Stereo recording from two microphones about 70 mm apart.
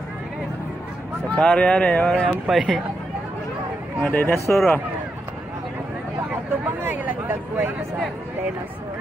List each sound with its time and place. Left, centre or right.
1.3 s speech: centre
2.4 s speech: centre
4.0 s speech: left
6.8 s speech: right